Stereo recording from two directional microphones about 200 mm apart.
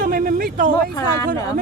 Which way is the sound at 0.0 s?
45° right (ahead or behind).